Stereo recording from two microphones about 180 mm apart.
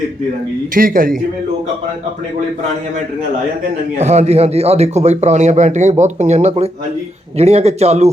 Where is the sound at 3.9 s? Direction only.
40° right (ahead or behind).